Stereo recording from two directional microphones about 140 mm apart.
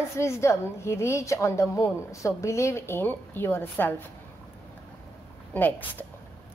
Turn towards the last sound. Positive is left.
turn(degrees=10)  # may be behind; listen again after turning